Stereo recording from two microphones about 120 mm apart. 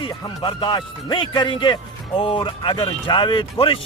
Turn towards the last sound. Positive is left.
turn(degrees=45)  # may be behind; listen again after turning